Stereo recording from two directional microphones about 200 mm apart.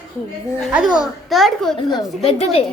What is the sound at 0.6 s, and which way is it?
Speech, centre (ahead or behind).